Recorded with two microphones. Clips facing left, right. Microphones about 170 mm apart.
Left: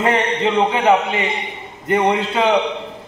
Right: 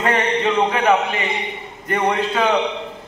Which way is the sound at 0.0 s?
25° left (ahead or behind).